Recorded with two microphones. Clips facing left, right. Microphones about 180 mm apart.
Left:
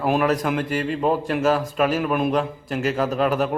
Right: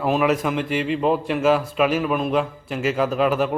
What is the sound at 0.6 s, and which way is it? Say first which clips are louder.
Speech: right 1 dB; 45° left (ahead or behind).